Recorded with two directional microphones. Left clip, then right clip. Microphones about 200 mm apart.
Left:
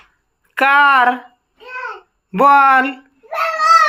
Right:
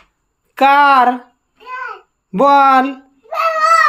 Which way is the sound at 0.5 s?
25° right (ahead or behind).